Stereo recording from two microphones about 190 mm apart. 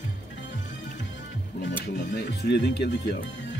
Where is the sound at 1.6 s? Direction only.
60° left (ahead or behind).